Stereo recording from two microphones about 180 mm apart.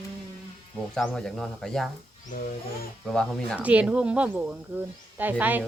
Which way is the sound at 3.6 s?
10° right (ahead or behind).